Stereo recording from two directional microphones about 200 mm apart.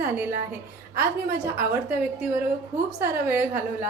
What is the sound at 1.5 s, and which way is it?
A woman's voice, 10° right (ahead or behind).